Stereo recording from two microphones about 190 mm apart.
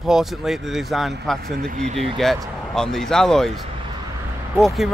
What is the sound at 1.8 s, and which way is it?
Speech, 35° right (ahead or behind).